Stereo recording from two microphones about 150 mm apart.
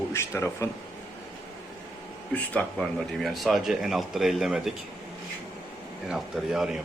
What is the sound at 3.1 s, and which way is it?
Speech, centre (ahead or behind).